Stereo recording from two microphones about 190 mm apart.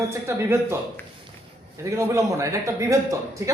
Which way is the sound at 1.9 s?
15° right (ahead or behind).